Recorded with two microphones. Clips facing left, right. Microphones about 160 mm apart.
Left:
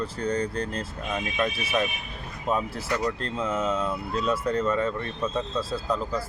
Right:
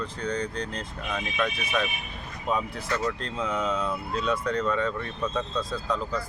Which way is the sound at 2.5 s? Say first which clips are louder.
Left 1 dB; 15° left (ahead or behind).